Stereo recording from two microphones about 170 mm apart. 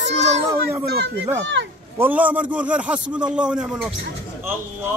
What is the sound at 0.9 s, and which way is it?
Speech, 80° right.